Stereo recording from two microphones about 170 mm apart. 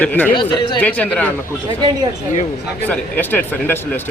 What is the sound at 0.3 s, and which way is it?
Speech, 25° left (ahead or behind).